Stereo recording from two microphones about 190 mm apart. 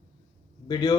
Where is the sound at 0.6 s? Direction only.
20° left (ahead or behind).